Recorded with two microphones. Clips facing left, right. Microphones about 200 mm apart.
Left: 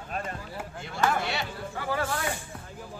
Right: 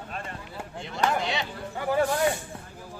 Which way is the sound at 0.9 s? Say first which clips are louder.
Right 1 dB; 20° right (ahead or behind).